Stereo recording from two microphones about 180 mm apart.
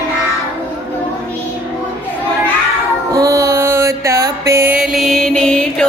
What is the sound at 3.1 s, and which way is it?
Mantra, 20° right (ahead or behind).